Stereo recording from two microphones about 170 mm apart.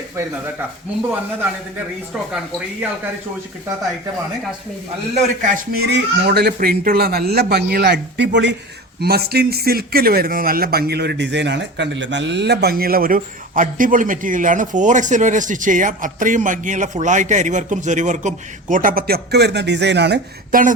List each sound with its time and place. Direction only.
5.1 s speech: 50° right (ahead or behind)
5.8 s speech: 70° right (ahead or behind); by 8.5 s 90° right
9.0 s speech: 70° right (ahead or behind); by 20.2 s 90° right
20.5 s speech: 50° right (ahead or behind)